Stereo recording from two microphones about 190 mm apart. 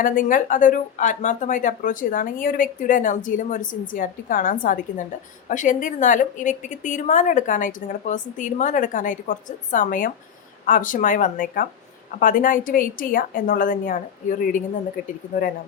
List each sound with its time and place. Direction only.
0.0 s a woman's voice: 45° left (ahead or behind)